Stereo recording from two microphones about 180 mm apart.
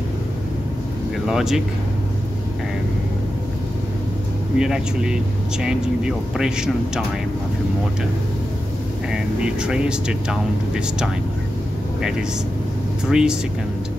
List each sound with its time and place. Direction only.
1.2 s speech: 5° right (ahead or behind)
4.6 s speech: 5° right (ahead or behind)
9.1 s speech: 5° right (ahead or behind)
13.1 s speech: 5° right (ahead or behind)